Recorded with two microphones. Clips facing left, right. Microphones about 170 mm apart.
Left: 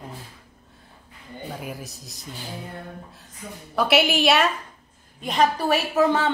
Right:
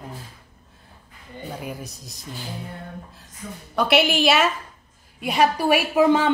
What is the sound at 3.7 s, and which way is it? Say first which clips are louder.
A woman's voice: right 1 dB; centre (ahead or behind).